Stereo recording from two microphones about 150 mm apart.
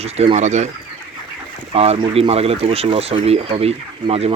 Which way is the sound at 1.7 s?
40° right (ahead or behind).